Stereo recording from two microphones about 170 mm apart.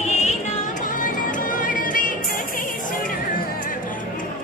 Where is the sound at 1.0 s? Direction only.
50° left (ahead or behind).